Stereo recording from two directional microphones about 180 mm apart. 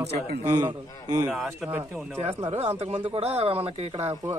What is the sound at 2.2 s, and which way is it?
Speech, 35° right (ahead or behind).